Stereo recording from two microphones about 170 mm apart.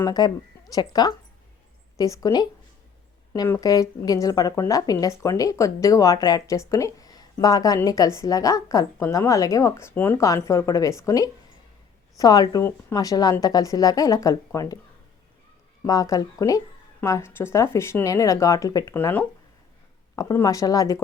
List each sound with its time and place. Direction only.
0.0 s a woman's voice: 25° left (ahead or behind)
15.8 s a woman's voice: 20° left (ahead or behind)
18.9 s speech: 10° left (ahead or behind)
20.1 s a woman's voice: 20° left (ahead or behind)